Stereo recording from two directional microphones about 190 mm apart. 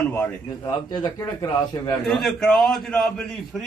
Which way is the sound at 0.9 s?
20° left (ahead or behind).